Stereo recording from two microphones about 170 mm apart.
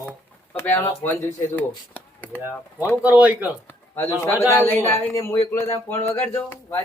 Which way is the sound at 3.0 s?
10° right (ahead or behind).